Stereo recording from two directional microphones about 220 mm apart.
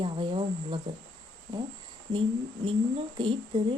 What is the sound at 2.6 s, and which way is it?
Speech, 25° right (ahead or behind).